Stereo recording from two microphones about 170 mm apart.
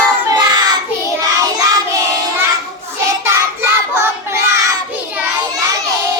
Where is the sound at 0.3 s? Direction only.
25° right (ahead or behind).